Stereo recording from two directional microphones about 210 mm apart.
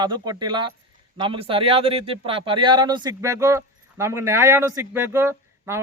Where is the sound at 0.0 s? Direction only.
20° right (ahead or behind).